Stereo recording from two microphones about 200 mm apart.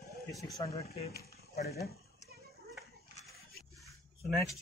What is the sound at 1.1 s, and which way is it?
Speech, 50° left (ahead or behind).